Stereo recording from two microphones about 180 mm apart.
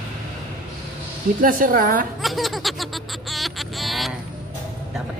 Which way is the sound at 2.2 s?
Centre (ahead or behind).